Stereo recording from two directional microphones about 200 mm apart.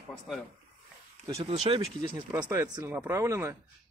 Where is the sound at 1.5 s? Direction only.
30° right (ahead or behind).